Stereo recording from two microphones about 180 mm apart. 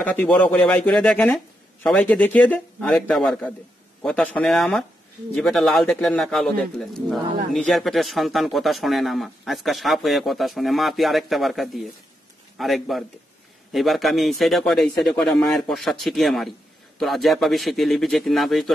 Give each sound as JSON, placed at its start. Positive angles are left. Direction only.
{"t": 0.0, "sound": "speech", "side_deg": 10}